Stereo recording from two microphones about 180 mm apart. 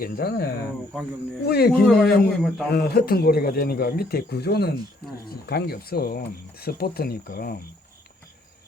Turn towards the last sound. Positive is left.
turn(degrees=55)  # may be behind; listen again after turning